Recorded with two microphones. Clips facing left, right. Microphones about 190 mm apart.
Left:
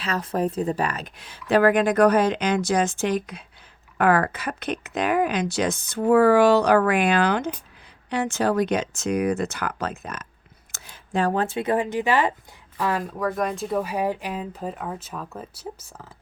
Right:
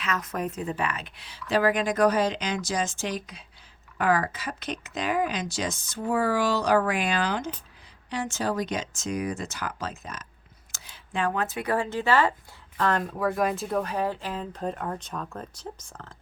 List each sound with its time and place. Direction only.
0.0 s speech: 30° left (ahead or behind); by 16.0 s 5° left (ahead or behind)